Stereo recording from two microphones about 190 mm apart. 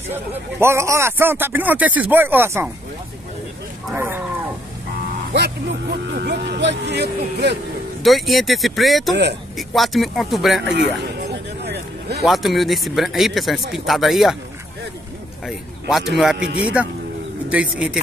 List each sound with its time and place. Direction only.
0.1 s speech: 10° right (ahead or behind)
3.9 s speech: 10° right (ahead or behind)
5.3 s speech: 60° right (ahead or behind)
8.0 s speech: centre (ahead or behind)
10.7 s speech: 65° right (ahead or behind)
11.6 s vehicle: 60° right (ahead or behind)
12.2 s speech: centre (ahead or behind)
15.4 s speech: centre (ahead or behind)